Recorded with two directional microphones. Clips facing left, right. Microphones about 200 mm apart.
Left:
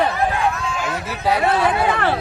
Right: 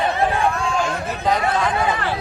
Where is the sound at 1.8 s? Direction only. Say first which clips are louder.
Left 3 dB; 60° left (ahead or behind).